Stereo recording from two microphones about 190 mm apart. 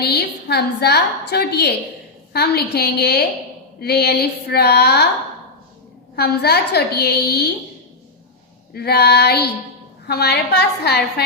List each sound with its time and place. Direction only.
0.0 s a woman's voice: 60° left (ahead or behind)
6.1 s a woman's voice: 55° left (ahead or behind)
8.7 s a woman's voice: 55° left (ahead or behind)